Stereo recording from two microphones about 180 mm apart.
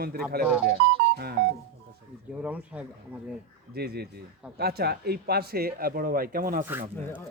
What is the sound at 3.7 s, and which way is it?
Speech, 60° right (ahead or behind).